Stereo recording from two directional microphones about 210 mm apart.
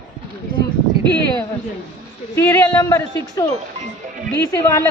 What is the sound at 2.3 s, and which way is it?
Speech, 10° left (ahead or behind).